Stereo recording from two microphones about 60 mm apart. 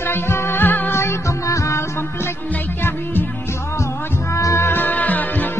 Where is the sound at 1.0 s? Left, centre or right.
Left.